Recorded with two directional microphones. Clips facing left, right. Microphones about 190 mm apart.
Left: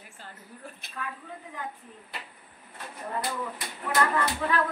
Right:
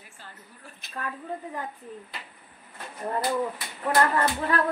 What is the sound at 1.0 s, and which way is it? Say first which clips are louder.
Speech: right 3 dB; 45° right (ahead or behind).